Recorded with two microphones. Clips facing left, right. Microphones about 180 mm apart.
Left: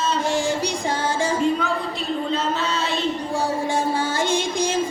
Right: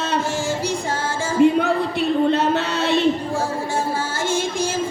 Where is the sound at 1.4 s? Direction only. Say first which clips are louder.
Right 6 dB; 60° right (ahead or behind).